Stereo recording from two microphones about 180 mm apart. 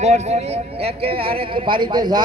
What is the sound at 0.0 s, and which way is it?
A man's voice, 40° right (ahead or behind).